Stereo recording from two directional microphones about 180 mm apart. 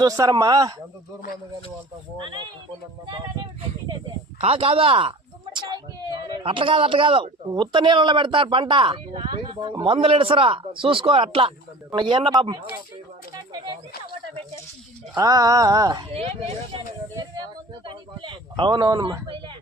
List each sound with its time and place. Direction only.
0.0 s a man's voice: 20° right (ahead or behind)
2.1 s a man's voice: 25° right (ahead or behind)
4.4 s speech: 35° right (ahead or behind)
5.5 s a sound: 20° right (ahead or behind)
6.3 s a man's voice: 30° right (ahead or behind)
13.3 s a man's voice: 25° right (ahead or behind)
15.1 s a man's voice: 20° right (ahead or behind)
17.8 s a sound: 25° right (ahead or behind)